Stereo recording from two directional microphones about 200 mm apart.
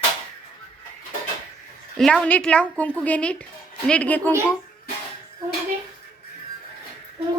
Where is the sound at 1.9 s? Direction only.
Centre (ahead or behind).